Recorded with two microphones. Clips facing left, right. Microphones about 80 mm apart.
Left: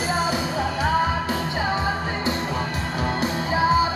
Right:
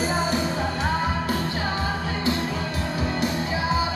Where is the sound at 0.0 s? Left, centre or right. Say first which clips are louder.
Even; centre; by 3.6 s left.